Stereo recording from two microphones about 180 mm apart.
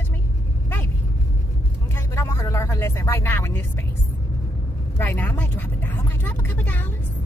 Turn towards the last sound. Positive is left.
turn(degrees=10)  # may be behind; listen again after turning